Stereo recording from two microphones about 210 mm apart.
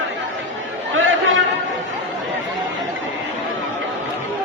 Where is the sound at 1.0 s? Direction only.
70° right (ahead or behind).